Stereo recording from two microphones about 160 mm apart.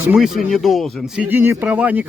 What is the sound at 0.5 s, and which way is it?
Speech, centre (ahead or behind).